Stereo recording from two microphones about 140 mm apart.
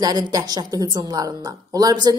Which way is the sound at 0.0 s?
30° right (ahead or behind).